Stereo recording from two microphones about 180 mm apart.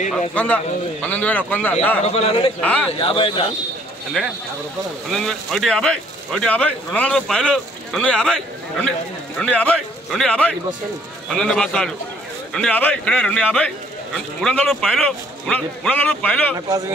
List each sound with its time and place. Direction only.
0.3 s a man's voice: 5° left (ahead or behind)
2.0 s a man's voice: 35° left (ahead or behind)
2.6 s a man's voice: 5° left (ahead or behind)
3.0 s speech: 30° left (ahead or behind)
4.2 s speech: 5° left (ahead or behind)
9.4 s speech: 5° left (ahead or behind)
16.5 s speech: 20° right (ahead or behind)